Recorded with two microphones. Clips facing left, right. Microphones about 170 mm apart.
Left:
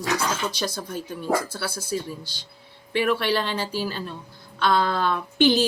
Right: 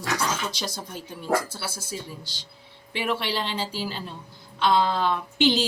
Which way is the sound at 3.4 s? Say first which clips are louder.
Left 3 dB; 15° right (ahead or behind).